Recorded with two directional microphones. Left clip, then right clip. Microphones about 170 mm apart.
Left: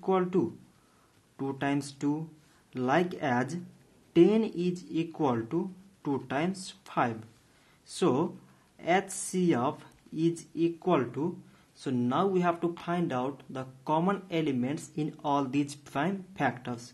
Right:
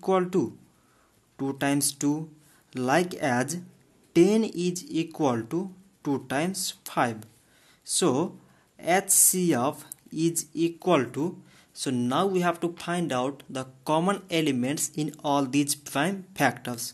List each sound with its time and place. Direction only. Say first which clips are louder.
0.0 s speech: right 3 dB; 25° right (ahead or behind)